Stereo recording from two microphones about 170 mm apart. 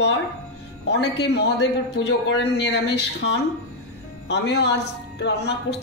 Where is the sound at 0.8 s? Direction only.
85° left.